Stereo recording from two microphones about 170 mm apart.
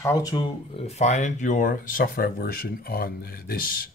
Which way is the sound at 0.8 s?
40° left (ahead or behind).